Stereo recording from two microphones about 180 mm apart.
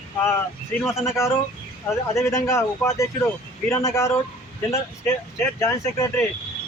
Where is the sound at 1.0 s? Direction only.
15° left (ahead or behind).